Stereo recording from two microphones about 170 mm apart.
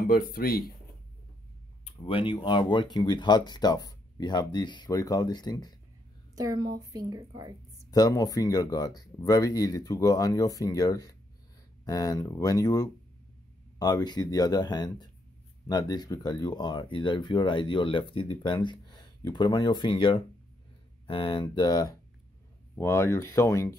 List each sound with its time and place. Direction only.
0.0 s speech: 60° left (ahead or behind)
2.0 s speech: 30° left (ahead or behind)
6.3 s a woman's voice: 20° right (ahead or behind)
7.9 s speech: 20° left (ahead or behind)